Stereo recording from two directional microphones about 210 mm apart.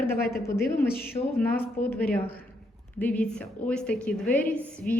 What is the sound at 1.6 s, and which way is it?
A woman's voice, 10° left (ahead or behind).